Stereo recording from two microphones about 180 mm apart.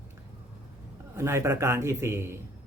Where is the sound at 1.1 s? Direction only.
15° right (ahead or behind).